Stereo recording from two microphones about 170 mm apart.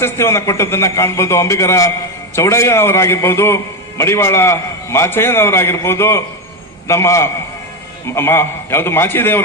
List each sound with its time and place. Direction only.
0.0 s a man's voice: 15° left (ahead or behind)